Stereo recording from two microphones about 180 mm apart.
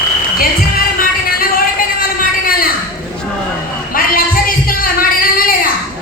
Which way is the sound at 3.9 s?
55° left (ahead or behind).